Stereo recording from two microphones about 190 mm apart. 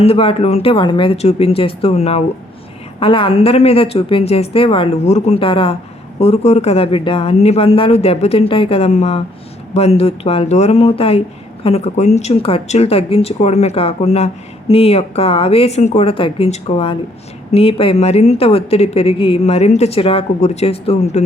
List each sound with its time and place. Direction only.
0.0 s a woman's voice: 30° left (ahead or behind)